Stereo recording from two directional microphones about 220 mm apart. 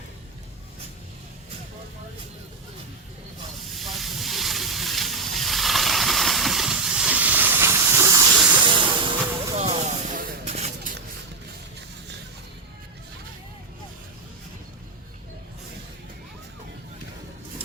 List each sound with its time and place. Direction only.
3.8 s hiss: centre (ahead or behind)
8.6 s hiss: 20° right (ahead or behind)
9.6 s vehicle: 30° right (ahead or behind)